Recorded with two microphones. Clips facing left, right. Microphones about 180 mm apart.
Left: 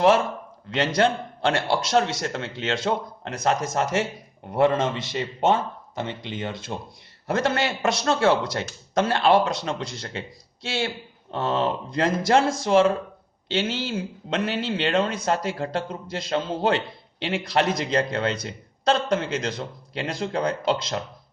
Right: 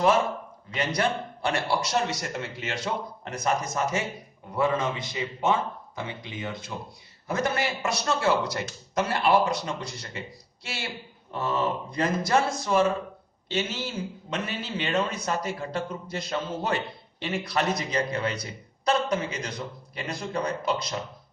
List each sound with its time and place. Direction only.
0.7 s a man's voice: 90° left